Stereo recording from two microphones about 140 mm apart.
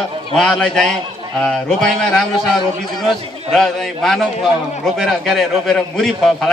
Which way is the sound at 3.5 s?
Centre (ahead or behind).